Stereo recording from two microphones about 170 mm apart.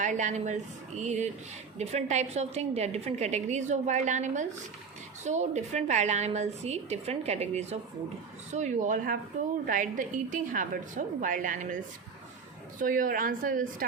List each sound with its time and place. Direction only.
0.0 s a woman's voice: 45° right (ahead or behind)
12.8 s a woman's voice: 55° right (ahead or behind)